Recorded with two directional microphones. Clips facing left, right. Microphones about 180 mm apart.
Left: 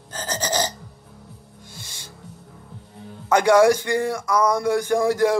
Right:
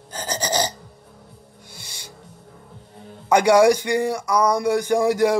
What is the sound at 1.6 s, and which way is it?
Music, 15° right (ahead or behind).